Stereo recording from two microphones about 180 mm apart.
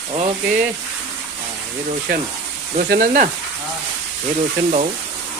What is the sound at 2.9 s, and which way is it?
Speech, 50° right (ahead or behind).